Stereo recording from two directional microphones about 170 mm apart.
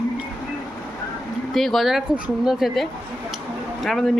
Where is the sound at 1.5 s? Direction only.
Centre (ahead or behind).